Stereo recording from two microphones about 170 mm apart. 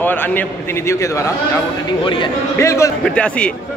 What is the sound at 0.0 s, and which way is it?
A man's voice, 10° left (ahead or behind).